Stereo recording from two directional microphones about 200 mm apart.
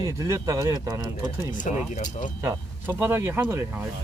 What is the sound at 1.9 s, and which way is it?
Speech, 40° left (ahead or behind).